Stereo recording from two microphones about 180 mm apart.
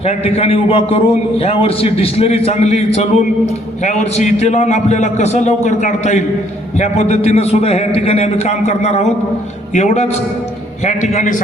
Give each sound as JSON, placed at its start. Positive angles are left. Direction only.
{"t": 0.0, "sound": "a man's voice", "side_deg": 35}